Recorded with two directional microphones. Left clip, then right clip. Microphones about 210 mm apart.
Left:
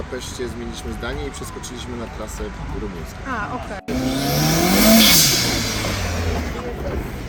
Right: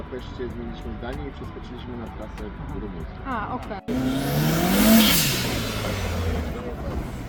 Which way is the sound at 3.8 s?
5° right (ahead or behind).